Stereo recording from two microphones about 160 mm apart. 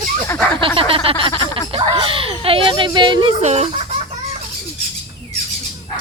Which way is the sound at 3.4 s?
45° right (ahead or behind).